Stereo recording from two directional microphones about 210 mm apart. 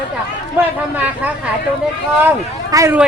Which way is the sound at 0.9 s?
5° right (ahead or behind).